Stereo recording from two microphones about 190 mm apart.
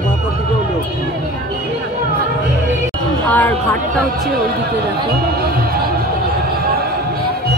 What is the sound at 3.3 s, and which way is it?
Speech, 10° left (ahead or behind).